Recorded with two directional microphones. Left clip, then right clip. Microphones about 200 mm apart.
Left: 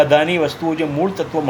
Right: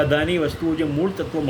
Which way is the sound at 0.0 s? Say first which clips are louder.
Left 6 dB; 15° right (ahead or behind).